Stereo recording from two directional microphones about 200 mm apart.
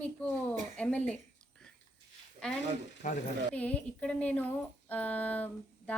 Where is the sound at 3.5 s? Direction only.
5° left (ahead or behind).